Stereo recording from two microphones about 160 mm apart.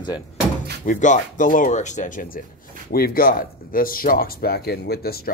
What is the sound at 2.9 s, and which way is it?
Speech, 70° left (ahead or behind).